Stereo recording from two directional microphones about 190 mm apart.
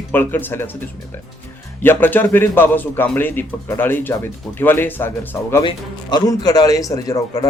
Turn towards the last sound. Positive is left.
turn(degrees=20)  # may be behind; listen again after turning